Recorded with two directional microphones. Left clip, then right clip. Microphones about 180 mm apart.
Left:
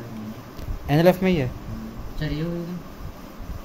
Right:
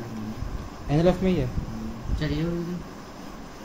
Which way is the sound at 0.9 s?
55° left (ahead or behind).